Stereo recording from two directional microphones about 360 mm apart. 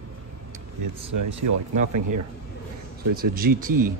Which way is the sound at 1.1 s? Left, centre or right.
Right.